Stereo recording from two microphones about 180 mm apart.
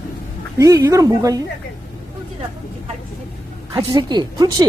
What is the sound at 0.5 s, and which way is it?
Speech, 20° right (ahead or behind).